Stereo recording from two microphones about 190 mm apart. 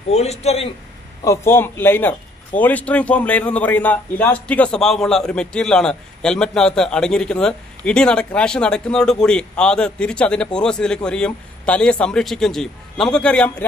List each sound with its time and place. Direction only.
0.1 s a man's voice: 35° left (ahead or behind)
1.2 s a man's voice: 15° left (ahead or behind)